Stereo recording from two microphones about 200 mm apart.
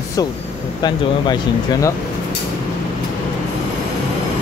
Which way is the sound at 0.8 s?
20° left (ahead or behind).